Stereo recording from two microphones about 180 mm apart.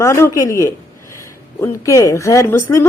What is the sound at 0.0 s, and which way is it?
Speech, 15° left (ahead or behind).